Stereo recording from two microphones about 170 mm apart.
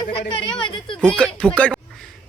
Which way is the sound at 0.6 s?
30° left (ahead or behind).